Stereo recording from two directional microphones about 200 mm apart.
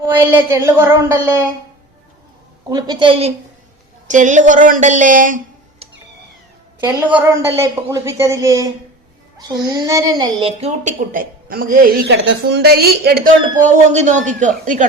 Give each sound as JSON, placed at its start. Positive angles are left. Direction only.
{"t": 0.0, "sound": "a woman's voice", "side_deg": -10}
{"t": 2.6, "sound": "a woman's voice", "side_deg": -20}
{"t": 6.7, "sound": "a woman's voice", "side_deg": -10}
{"t": 13.7, "sound": "a child's voice", "side_deg": -35}